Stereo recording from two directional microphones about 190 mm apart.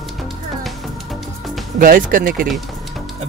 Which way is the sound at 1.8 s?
45° right (ahead or behind).